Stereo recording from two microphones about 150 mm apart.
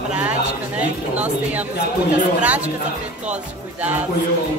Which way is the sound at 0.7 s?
10° right (ahead or behind).